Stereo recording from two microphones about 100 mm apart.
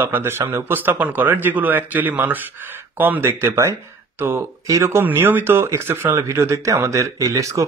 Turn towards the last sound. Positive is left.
turn(degrees=-30)  # may be behind; listen again after turning